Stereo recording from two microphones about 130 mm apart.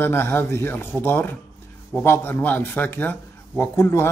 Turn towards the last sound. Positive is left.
turn(degrees=20)  # may be behind; listen again after turning